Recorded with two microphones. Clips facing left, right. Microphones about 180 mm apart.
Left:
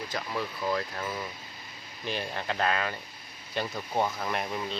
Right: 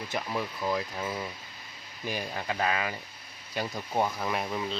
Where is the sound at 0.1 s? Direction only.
15° right (ahead or behind).